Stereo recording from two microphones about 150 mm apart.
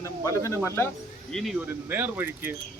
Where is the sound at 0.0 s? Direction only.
20° left (ahead or behind).